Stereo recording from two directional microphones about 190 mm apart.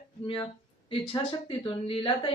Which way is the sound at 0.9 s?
30° left (ahead or behind).